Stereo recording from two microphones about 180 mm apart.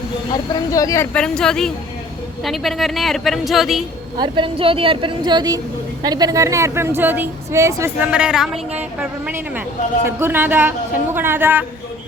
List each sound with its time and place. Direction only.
0.7 s a woman's voice: 20° left (ahead or behind)
1.1 s a woman's voice: 5° left (ahead or behind)
4.2 s speech: 30° right (ahead or behind); by 11.6 s 10° right (ahead or behind)